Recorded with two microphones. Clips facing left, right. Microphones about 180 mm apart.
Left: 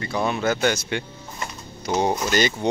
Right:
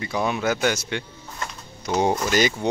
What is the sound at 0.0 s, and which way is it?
Speech, 10° right (ahead or behind).